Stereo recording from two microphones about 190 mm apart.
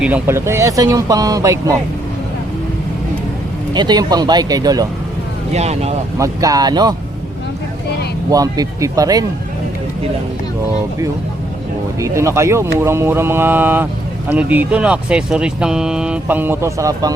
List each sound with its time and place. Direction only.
0.0 s speech: 10° right (ahead or behind)
3.8 s speech: 20° right (ahead or behind)
5.5 s speech: 35° right (ahead or behind)
6.1 s speech: 15° right (ahead or behind)
8.3 s speech: 20° right (ahead or behind)
11.9 s speech: 15° right (ahead or behind)